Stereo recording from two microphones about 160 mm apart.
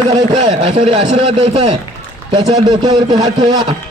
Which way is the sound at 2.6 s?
25° right (ahead or behind).